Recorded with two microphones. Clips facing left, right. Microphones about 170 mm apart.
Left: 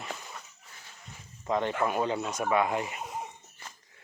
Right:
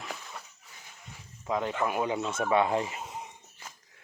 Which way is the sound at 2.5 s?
30° right (ahead or behind).